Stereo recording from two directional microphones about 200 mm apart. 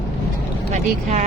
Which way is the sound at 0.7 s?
35° right (ahead or behind).